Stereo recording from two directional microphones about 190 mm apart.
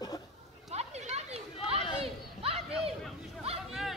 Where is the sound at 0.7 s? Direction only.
35° right (ahead or behind).